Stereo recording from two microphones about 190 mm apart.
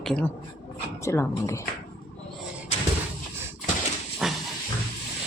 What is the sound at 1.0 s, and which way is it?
Speech, 15° left (ahead or behind).